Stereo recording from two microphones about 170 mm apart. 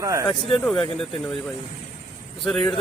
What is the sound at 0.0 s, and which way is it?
Speech, 20° right (ahead or behind).